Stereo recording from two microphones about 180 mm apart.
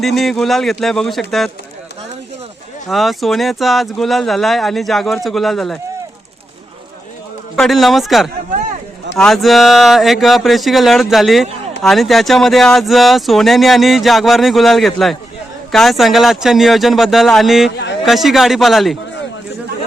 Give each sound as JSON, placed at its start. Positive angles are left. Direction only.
{"t": 0.0, "sound": "speech", "side_deg": 0}
{"t": 2.9, "sound": "speech", "side_deg": 0}
{"t": 7.5, "sound": "speech", "side_deg": 0}